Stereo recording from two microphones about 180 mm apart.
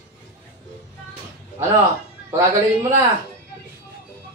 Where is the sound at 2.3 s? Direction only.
15° right (ahead or behind).